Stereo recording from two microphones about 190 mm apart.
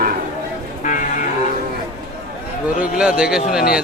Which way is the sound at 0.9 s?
45° left (ahead or behind).